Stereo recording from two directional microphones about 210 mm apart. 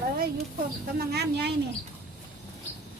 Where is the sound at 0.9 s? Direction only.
50° right (ahead or behind).